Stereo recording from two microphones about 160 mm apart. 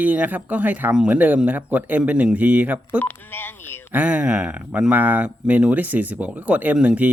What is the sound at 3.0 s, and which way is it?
Speech, 10° left (ahead or behind).